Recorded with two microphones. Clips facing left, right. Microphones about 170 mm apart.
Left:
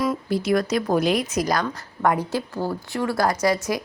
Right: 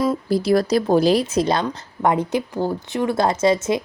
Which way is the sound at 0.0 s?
30° right (ahead or behind).